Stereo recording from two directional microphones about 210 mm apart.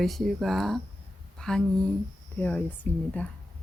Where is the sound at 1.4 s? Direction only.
5° left (ahead or behind).